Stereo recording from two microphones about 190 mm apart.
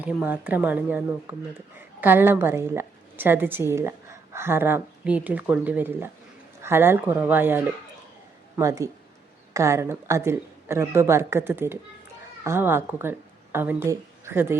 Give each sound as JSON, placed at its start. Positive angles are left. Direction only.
{"t": 0.0, "sound": "speech", "side_deg": -10}